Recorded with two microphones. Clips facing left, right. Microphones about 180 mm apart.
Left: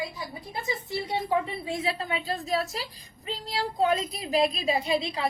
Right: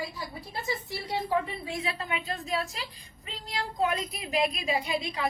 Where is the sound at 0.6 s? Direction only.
20° left (ahead or behind).